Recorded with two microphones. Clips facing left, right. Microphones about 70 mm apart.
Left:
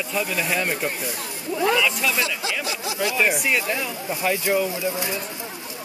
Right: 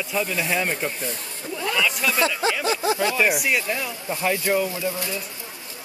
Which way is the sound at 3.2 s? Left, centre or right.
Centre.